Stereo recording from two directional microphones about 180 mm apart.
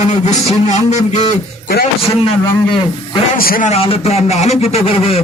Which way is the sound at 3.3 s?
55° left (ahead or behind).